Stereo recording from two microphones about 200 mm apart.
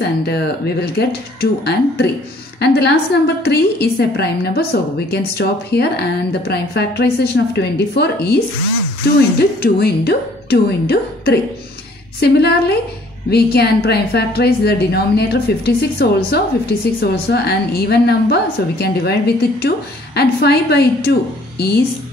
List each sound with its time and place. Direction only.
0.0 s a woman's voice: 55° left (ahead or behind)
9.4 s a woman's voice: 50° left (ahead or behind)